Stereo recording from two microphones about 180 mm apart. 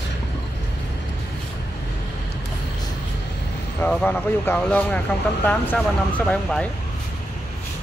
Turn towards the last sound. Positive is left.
turn(degrees=5)  # may be behind; listen again after turning